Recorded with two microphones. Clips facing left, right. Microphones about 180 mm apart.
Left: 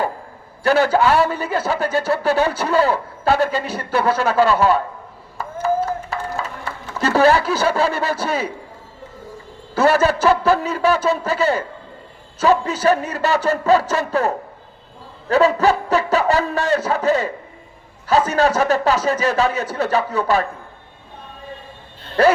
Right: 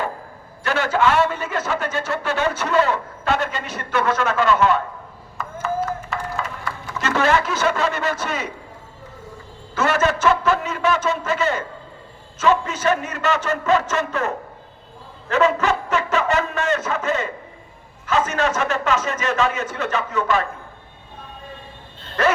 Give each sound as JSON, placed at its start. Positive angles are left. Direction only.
{"t": 0.6, "sound": "a man's voice", "side_deg": 35}
{"t": 5.6, "sound": "a sound", "side_deg": 35}
{"t": 7.0, "sound": "a man's voice", "side_deg": 35}
{"t": 9.7, "sound": "a man's voice", "side_deg": 35}
{"t": 22.2, "sound": "dog", "side_deg": 35}